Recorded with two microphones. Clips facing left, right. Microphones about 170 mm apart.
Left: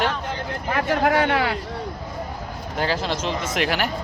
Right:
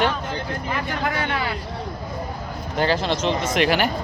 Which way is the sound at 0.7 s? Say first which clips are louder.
Left 7 dB; 70° left (ahead or behind).